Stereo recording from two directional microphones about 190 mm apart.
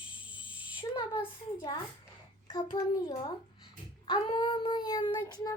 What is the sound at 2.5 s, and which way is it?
Child singing, 25° left (ahead or behind).